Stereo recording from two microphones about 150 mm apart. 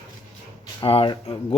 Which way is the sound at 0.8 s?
35° left (ahead or behind).